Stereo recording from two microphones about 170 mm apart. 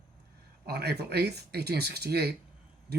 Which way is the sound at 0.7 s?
70° right (ahead or behind).